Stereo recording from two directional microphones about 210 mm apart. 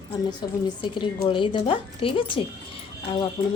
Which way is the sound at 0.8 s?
25° left (ahead or behind).